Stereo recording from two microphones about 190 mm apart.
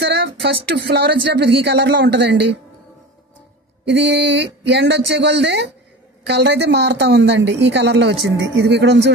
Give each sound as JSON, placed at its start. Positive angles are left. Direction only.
{"t": 0.0, "sound": "a woman's voice", "side_deg": -60}
{"t": 3.8, "sound": "a sound", "side_deg": -70}
{"t": 4.6, "sound": "a woman's voice", "side_deg": -65}